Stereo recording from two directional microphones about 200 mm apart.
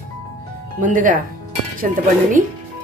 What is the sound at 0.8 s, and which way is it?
Speech, 40° right (ahead or behind).